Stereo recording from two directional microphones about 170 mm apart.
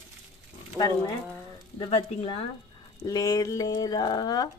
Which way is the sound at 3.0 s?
20° left (ahead or behind).